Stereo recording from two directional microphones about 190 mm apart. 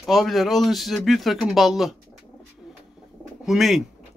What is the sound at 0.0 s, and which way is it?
Speech, centre (ahead or behind).